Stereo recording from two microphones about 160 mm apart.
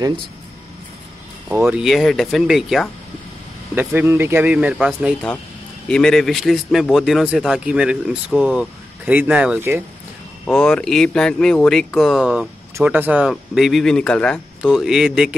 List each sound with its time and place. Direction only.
1.5 s speech: 15° right (ahead or behind)
1.8 s speech: centre (ahead or behind)
3.7 s speech: 15° right (ahead or behind)
10.4 s speech: 5° left (ahead or behind)